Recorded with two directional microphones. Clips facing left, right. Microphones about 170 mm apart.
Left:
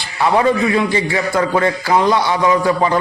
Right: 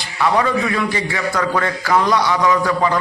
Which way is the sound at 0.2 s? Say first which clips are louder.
Left 3 dB; 30° left (ahead or behind).